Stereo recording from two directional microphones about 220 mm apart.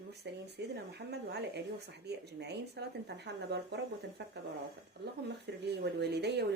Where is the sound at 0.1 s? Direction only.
50° right (ahead or behind).